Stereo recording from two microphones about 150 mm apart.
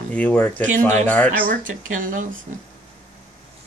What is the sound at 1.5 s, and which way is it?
Speech, 60° right (ahead or behind).